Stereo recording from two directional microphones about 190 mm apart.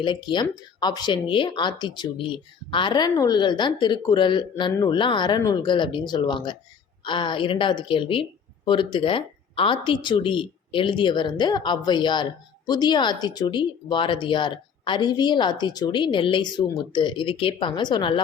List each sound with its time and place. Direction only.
0.0 s a woman's voice: 25° left (ahead or behind)